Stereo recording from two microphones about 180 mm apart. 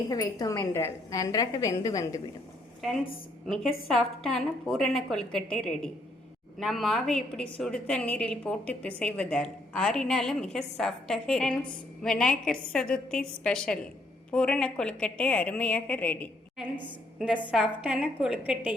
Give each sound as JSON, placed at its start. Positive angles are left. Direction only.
{"t": 0.1, "sound": "a woman's voice", "side_deg": 20}
{"t": 3.4, "sound": "a woman's voice", "side_deg": 0}
{"t": 16.6, "sound": "a woman's voice", "side_deg": -5}